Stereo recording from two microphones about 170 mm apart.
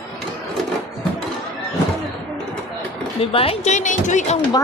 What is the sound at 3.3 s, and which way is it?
Speech, 35° left (ahead or behind).